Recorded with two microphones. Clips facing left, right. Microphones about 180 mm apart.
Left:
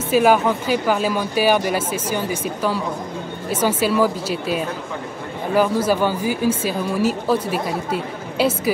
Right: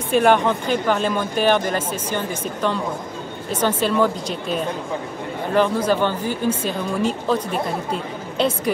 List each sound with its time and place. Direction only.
0.1 s speech: 5° left (ahead or behind)